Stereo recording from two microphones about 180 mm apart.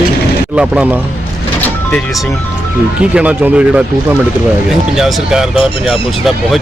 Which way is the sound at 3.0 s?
5° right (ahead or behind).